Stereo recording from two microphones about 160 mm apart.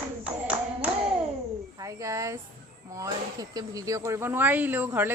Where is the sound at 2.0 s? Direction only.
20° right (ahead or behind).